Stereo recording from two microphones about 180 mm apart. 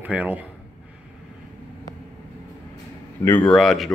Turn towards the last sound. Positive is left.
turn(degrees=0)  # may be behind; listen again after turning